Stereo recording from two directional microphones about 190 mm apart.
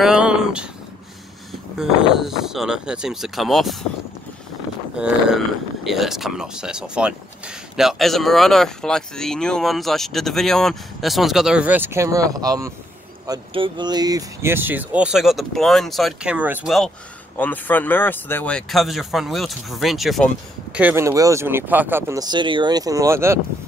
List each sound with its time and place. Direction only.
0.0 s speech: 5° right (ahead or behind)
1.8 s speech: centre (ahead or behind)
4.9 s speech: 5° right (ahead or behind)
17.4 s speech: 10° left (ahead or behind)
20.7 s speech: 10° right (ahead or behind)